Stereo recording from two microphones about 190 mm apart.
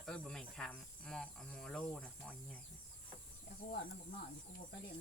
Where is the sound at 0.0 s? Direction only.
5° left (ahead or behind).